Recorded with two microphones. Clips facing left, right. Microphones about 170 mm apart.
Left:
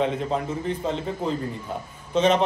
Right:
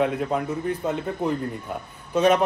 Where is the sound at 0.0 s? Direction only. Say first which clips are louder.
Right 1 dB; 10° right (ahead or behind).